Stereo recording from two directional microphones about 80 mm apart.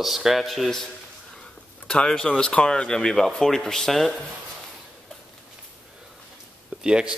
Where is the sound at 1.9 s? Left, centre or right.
Centre.